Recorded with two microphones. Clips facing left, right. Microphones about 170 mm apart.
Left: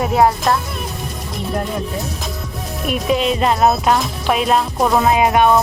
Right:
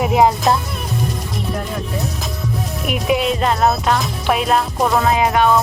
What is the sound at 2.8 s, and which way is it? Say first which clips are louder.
Music: left 1 dB; 10° right (ahead or behind).